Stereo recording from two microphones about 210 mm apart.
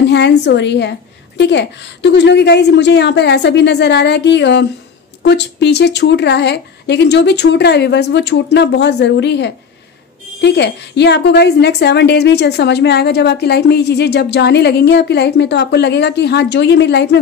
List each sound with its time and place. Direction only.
0.1 s a woman's voice: 55° left (ahead or behind)